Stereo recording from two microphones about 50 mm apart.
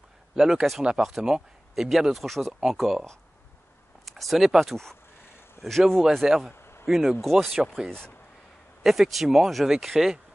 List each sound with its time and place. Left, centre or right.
0.4 s speech: centre
4.2 s speech: centre
6.2 s speech: centre
6.6 s a sound: left
6.9 s speech: centre
8.8 s speech: centre